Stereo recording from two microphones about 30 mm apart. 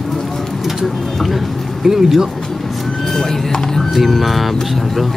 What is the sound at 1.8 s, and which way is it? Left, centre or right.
Speech, centre.